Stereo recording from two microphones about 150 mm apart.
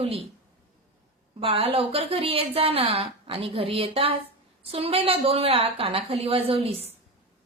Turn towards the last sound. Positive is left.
turn(degrees=-40)  # may be behind; listen again after turning